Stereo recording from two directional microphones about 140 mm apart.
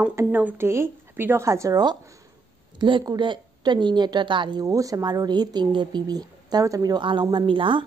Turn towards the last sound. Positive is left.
turn(degrees=-35)  # may be behind; listen again after turning